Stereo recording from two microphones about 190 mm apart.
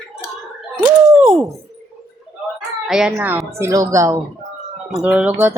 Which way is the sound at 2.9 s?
5° right (ahead or behind).